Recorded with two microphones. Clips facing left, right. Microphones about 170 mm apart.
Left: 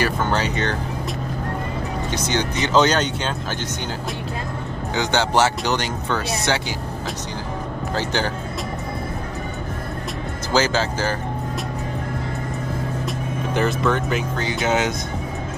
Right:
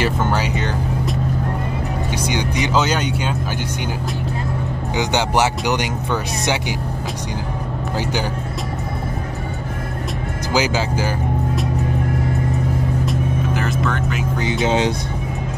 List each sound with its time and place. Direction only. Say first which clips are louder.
0.2 s speech: right 1 dB; 10° right (ahead or behind)
2.1 s speech: right 1 dB; 10° right (ahead or behind)
4.9 s speech: right 1 dB; 15° right (ahead or behind)
10.5 s speech: even; 15° right (ahead or behind)
13.0 s vehicle: right 5 dB; centre (ahead or behind)
14.3 s speech: right 5 dB; 20° right (ahead or behind)